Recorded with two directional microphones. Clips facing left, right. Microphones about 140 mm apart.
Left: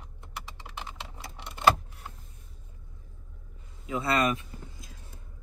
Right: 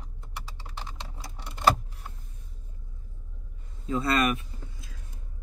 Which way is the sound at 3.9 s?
25° left (ahead or behind).